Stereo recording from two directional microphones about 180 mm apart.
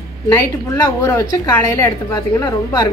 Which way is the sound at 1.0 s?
15° left (ahead or behind).